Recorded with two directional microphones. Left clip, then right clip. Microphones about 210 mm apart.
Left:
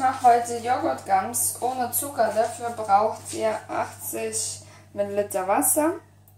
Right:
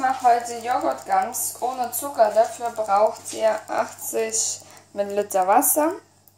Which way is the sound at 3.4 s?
45° right (ahead or behind).